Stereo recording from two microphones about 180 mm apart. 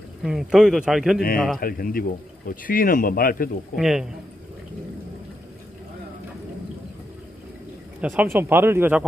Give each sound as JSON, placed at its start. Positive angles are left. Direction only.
{"t": 0.2, "sound": "speech", "side_deg": 0}
{"t": 1.6, "sound": "speech", "side_deg": 55}
{"t": 3.7, "sound": "speech", "side_deg": 0}
{"t": 8.0, "sound": "speech", "side_deg": -10}